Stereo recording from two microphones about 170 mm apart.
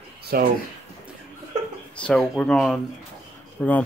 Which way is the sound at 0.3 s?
65° right (ahead or behind).